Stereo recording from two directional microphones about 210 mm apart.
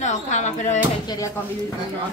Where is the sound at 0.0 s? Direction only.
35° left (ahead or behind).